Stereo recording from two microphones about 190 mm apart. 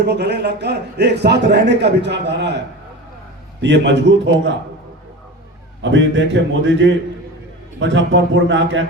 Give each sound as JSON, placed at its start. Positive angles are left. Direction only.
{"t": 0.0, "sound": "a man's voice", "side_deg": -60}
{"t": 3.6, "sound": "a man's voice", "side_deg": -70}
{"t": 5.8, "sound": "a man's voice", "side_deg": -75}